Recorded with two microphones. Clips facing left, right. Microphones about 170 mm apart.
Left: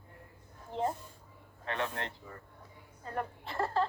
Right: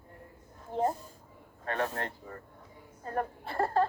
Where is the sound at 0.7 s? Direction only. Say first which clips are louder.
Right 4 dB; 45° right (ahead or behind).